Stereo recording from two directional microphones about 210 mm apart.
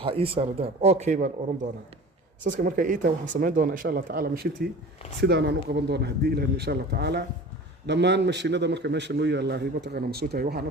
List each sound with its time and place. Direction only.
0.0 s speech: 25° right (ahead or behind)
2.4 s a man's voice: 40° right (ahead or behind)